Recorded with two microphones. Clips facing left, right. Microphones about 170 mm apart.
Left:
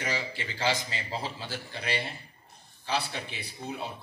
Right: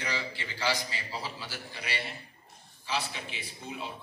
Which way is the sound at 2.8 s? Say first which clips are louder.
Left 3 dB; 35° left (ahead or behind).